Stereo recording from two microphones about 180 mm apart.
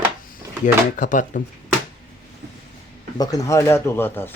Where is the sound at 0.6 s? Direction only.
45° left (ahead or behind).